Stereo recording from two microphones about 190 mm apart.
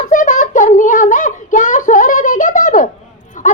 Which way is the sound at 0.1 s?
45° left (ahead or behind).